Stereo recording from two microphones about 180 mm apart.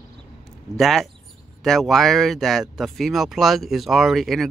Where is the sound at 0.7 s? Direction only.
Centre (ahead or behind).